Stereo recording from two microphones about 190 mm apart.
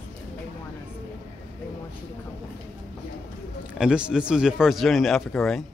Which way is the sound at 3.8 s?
5° right (ahead or behind).